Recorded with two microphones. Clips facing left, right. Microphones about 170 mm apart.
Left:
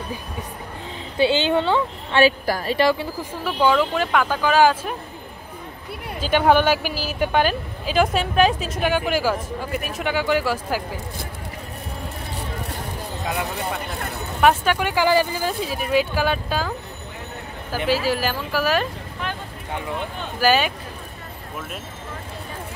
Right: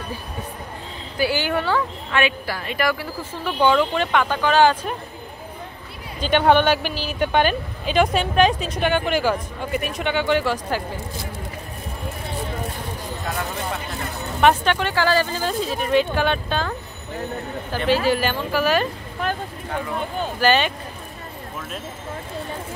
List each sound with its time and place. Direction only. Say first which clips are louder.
1.1 s speech: left 3 dB; 25° left (ahead or behind)
2.1 s a woman's voice: left 5 dB; 40° left (ahead or behind)
3.4 s speech: right 1 dB; 5° left (ahead or behind)
6.2 s speech: even; 5° left (ahead or behind)
14.4 s speech: even; 5° left (ahead or behind)
20.3 s speech: even; 5° left (ahead or behind)